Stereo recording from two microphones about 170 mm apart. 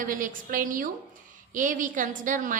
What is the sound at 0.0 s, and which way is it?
A woman's voice, 50° right (ahead or behind).